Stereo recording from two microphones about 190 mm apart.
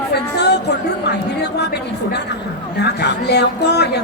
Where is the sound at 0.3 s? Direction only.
60° left (ahead or behind).